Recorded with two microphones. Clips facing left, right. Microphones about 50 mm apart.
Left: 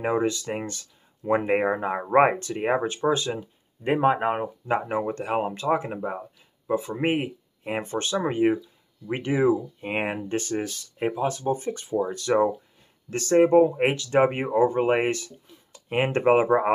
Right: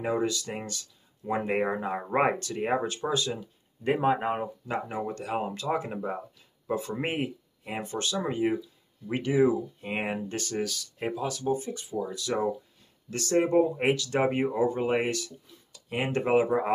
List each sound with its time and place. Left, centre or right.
0.0 s speech: left
5.9 s speech: centre
7.6 s speech: left
13.1 s speech: left